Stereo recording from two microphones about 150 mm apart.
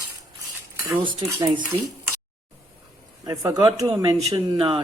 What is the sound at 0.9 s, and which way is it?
Speech, 30° right (ahead or behind).